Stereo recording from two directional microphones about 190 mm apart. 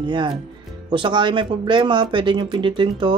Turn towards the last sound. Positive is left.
turn(degrees=-25)  # may be behind; listen again after turning